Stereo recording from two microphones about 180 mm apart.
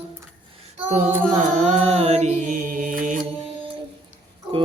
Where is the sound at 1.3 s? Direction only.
40° right (ahead or behind).